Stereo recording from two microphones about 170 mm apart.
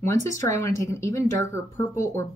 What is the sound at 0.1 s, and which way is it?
Speech, 15° left (ahead or behind).